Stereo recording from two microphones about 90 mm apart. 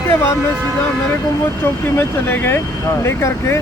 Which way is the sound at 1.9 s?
25° left (ahead or behind).